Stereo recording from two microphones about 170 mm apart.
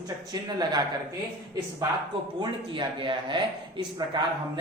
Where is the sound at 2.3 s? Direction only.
30° right (ahead or behind).